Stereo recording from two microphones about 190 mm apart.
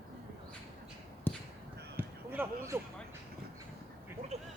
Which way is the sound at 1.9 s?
10° right (ahead or behind).